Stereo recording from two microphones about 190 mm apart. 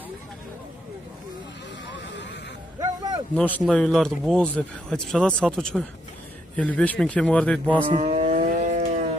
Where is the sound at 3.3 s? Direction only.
5° left (ahead or behind).